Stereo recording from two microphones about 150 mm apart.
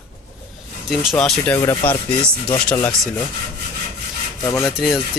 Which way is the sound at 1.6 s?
20° left (ahead or behind).